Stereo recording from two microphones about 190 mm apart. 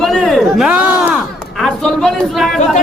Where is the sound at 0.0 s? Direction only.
Centre (ahead or behind).